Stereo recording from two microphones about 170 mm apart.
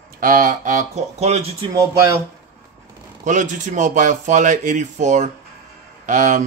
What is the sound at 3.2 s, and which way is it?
Speech, 50° right (ahead or behind).